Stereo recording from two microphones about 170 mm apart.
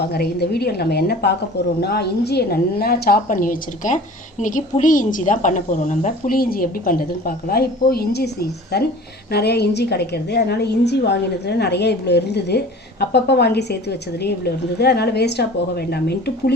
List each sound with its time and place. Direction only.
0.1 s a woman's voice: 70° left (ahead or behind)